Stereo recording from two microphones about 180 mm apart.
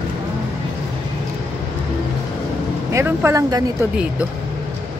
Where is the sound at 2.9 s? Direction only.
15° right (ahead or behind).